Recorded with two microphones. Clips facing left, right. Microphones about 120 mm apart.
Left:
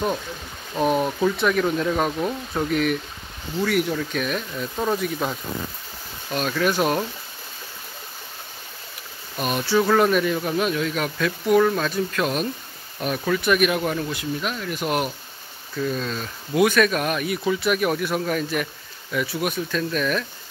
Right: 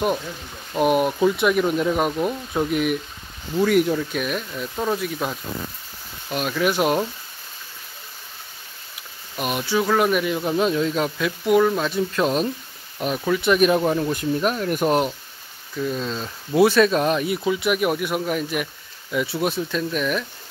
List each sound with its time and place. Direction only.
0.7 s speech: 10° right (ahead or behind)
6.3 s speech: 15° right (ahead or behind)
9.4 s speech: 15° right (ahead or behind)
10.6 s speech: 25° right (ahead or behind)
11.1 s speech: 15° right (ahead or behind)
11.9 s speech: 25° right (ahead or behind)
14.1 s speech: 40° right (ahead or behind)
14.9 s speech: 25° right (ahead or behind)
19.2 s speech: 25° right (ahead or behind)
19.8 s speech: 15° right (ahead or behind)